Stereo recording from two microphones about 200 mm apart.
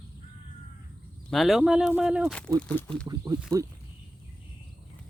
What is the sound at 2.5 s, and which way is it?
Speech, 5° left (ahead or behind).